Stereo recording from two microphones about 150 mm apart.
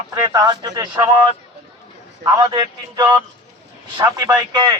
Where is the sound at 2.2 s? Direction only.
30° right (ahead or behind).